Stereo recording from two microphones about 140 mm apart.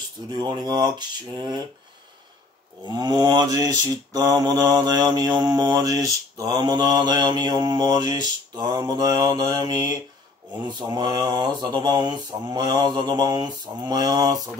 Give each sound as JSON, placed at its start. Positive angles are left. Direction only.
{"t": 0.3, "sound": "mantra", "side_deg": -30}
{"t": 2.8, "sound": "mantra", "side_deg": -30}